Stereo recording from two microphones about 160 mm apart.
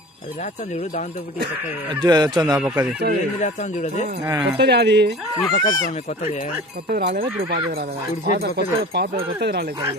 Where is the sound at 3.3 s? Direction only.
50° left (ahead or behind).